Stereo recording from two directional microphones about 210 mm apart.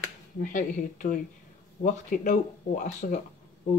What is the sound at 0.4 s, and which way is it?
Speech, 40° left (ahead or behind).